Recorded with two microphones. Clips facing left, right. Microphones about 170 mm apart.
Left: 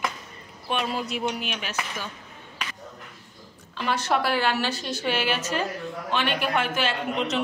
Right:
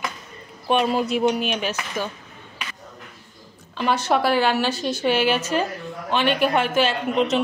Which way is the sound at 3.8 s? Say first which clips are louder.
Right 4 dB; 25° right (ahead or behind).